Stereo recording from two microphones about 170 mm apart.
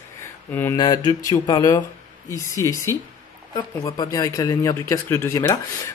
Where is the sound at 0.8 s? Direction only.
25° left (ahead or behind).